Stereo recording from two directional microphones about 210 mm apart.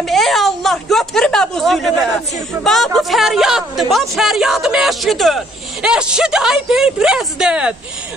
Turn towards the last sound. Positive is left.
turn(degrees=-5)  # may be behind; listen again after turning